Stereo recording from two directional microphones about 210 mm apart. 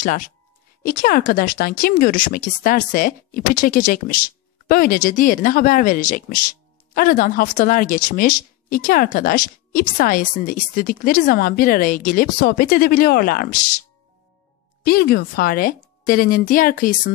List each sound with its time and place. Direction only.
0.0 s speech: 40° left (ahead or behind)
14.8 s speech: 45° left (ahead or behind)